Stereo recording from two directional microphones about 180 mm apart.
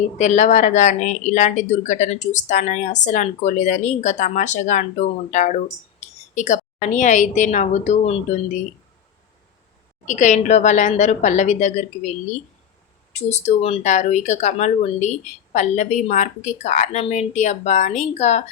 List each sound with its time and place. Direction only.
0.2 s a woman's voice: 40° left (ahead or behind)
10.1 s speech: 40° left (ahead or behind)
13.1 s speech: 40° left (ahead or behind)